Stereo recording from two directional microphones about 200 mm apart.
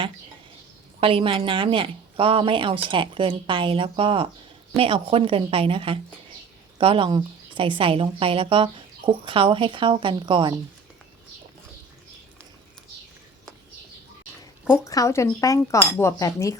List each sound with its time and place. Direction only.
0.9 s a woman's voice: 25° right (ahead or behind)
14.8 s speech: 15° left (ahead or behind)